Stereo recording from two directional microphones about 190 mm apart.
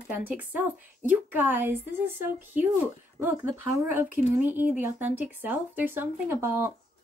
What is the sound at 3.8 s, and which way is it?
Speech, 10° right (ahead or behind).